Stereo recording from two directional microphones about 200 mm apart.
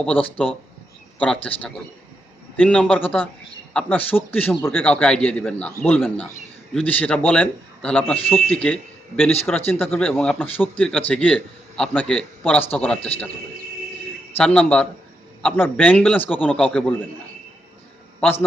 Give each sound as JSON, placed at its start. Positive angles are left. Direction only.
{"t": 0.0, "sound": "a man's voice", "side_deg": 5}
{"t": 14.3, "sound": "a man's voice", "side_deg": 5}
{"t": 16.4, "sound": "speech", "side_deg": 0}